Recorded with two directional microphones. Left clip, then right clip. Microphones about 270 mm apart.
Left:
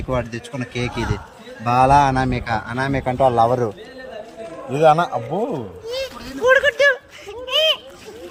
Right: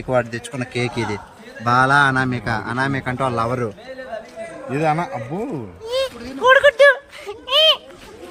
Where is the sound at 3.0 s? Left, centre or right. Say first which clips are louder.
Left 6 dB; right.